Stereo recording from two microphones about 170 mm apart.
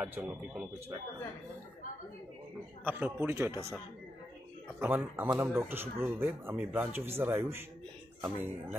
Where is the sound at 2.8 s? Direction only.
10° right (ahead or behind).